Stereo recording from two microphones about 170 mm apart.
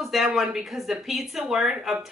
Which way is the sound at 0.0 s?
Centre (ahead or behind).